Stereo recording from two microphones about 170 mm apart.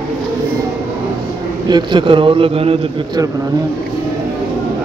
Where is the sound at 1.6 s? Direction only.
25° right (ahead or behind).